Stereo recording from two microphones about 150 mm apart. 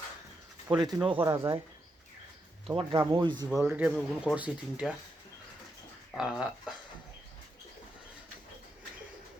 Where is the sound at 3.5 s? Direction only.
5° right (ahead or behind).